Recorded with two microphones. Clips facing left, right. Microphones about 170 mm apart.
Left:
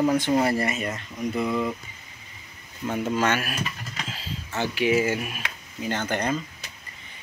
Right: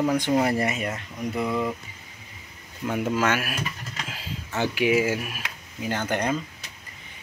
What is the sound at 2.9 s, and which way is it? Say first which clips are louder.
Speech: even; 5° right (ahead or behind).